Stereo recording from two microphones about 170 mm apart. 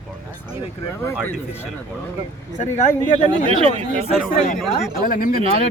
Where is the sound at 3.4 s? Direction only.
35° right (ahead or behind).